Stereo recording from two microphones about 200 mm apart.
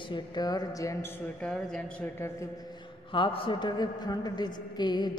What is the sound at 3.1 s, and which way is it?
A woman's voice, 25° left (ahead or behind).